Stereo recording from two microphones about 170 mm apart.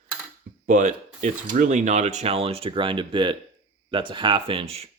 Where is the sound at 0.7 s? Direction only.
45° right (ahead or behind).